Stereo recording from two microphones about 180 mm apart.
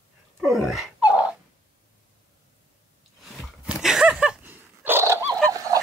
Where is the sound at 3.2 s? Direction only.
5° right (ahead or behind).